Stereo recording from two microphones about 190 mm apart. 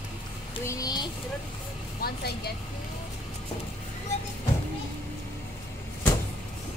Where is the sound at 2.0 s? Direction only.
55° left (ahead or behind).